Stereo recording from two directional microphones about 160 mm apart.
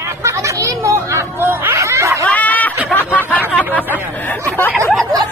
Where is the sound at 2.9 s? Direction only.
10° left (ahead or behind).